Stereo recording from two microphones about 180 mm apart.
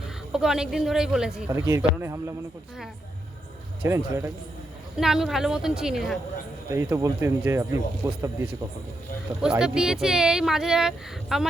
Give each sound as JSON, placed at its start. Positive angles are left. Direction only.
{"t": 0.3, "sound": "speech", "side_deg": -5}
{"t": 1.5, "sound": "speech", "side_deg": -15}
{"t": 3.8, "sound": "speech", "side_deg": -15}
{"t": 4.9, "sound": "speech", "side_deg": 0}
{"t": 6.7, "sound": "speech", "side_deg": -15}
{"t": 9.4, "sound": "speech", "side_deg": -5}